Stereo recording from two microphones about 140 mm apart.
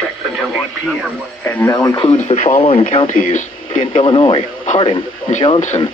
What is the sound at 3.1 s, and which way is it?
Speech, 70° left (ahead or behind).